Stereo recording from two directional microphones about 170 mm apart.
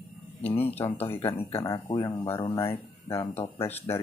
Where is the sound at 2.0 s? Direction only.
15° left (ahead or behind).